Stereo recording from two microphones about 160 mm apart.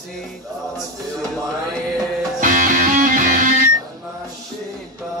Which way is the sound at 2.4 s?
55° right (ahead or behind).